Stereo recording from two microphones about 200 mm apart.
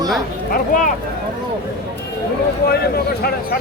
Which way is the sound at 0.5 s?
45° left (ahead or behind).